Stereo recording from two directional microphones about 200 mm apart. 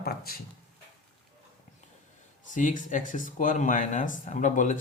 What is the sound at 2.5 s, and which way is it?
Speech, 40° left (ahead or behind).